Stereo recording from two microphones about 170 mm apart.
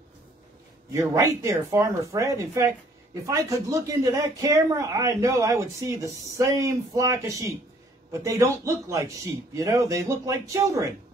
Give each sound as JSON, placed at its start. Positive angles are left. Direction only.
{"t": 0.9, "sound": "a man's voice", "side_deg": -20}